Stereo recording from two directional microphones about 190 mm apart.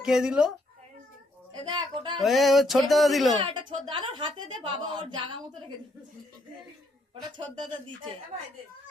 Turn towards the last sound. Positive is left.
turn(degrees=-25)  # may be behind; listen again after turning